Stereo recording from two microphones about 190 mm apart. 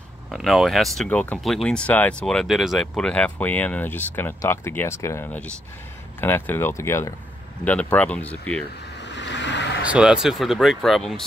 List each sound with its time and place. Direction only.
0.3 s speech: centre (ahead or behind)
9.0 s vehicle: 70° left (ahead or behind)
9.8 s speech: 5° right (ahead or behind)